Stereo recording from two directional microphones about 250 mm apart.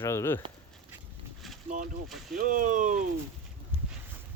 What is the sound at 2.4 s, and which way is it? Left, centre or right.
Speech, right.